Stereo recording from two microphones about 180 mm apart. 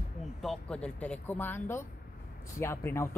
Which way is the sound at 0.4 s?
5° left (ahead or behind).